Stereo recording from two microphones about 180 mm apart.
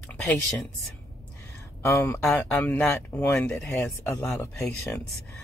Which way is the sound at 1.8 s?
15° left (ahead or behind).